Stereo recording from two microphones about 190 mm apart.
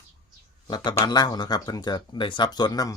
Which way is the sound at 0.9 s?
20° left (ahead or behind).